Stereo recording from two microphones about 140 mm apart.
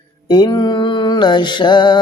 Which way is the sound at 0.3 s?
30° left (ahead or behind).